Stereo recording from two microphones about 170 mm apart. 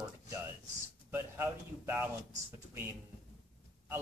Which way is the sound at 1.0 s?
15° right (ahead or behind).